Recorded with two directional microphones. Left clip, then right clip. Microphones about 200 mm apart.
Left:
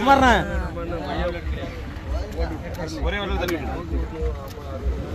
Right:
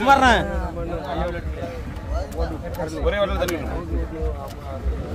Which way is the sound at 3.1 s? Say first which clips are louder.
Right 6 dB; 55° right (ahead or behind).